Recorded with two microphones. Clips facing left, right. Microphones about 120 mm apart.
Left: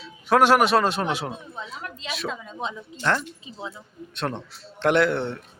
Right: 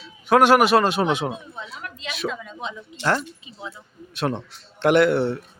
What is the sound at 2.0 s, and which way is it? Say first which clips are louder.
Speech: right 3 dB; centre (ahead or behind).